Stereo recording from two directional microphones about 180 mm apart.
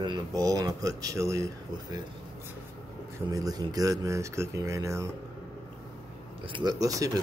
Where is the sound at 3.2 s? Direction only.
20° right (ahead or behind).